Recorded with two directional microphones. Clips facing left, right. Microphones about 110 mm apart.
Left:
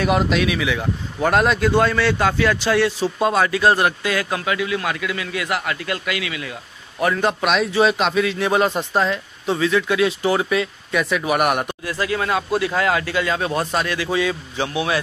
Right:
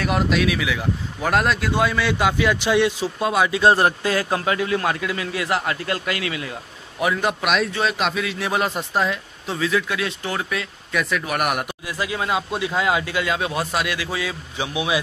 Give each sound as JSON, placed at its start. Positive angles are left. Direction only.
{"t": 0.0, "sound": "speech", "side_deg": 0}
{"t": 3.2, "sound": "speech", "side_deg": 0}
{"t": 3.4, "sound": "a man's voice", "side_deg": -25}
{"t": 7.0, "sound": "speech", "side_deg": -5}
{"t": 11.8, "sound": "speech", "side_deg": -15}